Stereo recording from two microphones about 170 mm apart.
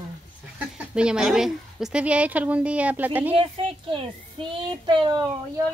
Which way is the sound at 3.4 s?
35° right (ahead or behind).